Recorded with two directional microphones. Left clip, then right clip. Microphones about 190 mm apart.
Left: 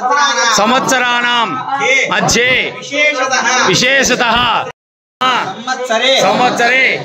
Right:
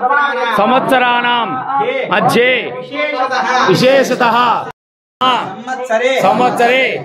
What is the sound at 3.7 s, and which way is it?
A man's voice, centre (ahead or behind).